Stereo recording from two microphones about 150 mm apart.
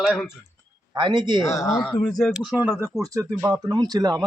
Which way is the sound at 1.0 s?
30° right (ahead or behind).